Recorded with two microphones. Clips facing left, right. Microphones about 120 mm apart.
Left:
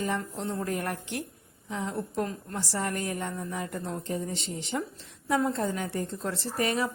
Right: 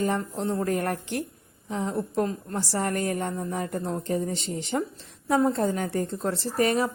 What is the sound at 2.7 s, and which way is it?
A woman's voice, 45° right (ahead or behind).